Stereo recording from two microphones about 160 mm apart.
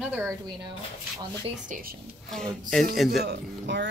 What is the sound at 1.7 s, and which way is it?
Speech, 65° right (ahead or behind).